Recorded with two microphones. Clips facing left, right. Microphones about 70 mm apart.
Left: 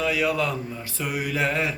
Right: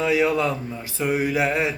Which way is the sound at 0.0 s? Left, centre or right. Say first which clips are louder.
Right 3 dB; right.